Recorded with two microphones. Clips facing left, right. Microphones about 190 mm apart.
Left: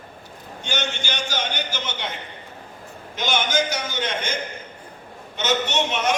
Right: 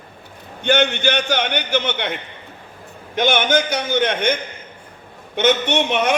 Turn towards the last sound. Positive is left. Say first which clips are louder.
# right 4 dB
turn(degrees=-60)  # may be behind; listen again after turning